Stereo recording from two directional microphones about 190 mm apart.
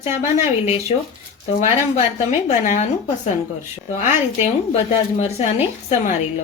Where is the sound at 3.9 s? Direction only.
35° left (ahead or behind).